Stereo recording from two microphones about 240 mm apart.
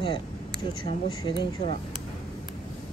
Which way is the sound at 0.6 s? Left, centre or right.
Left.